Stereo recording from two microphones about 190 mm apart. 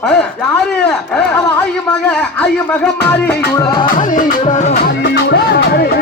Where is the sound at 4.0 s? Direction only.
40° left (ahead or behind).